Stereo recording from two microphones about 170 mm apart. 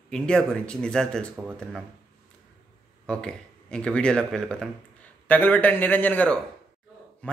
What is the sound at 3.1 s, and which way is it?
A man's voice, 5° left (ahead or behind).